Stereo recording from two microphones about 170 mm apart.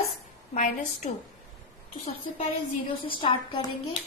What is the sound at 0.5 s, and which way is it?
Speech, 50° left (ahead or behind).